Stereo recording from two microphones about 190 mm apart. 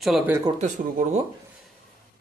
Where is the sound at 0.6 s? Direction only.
40° right (ahead or behind).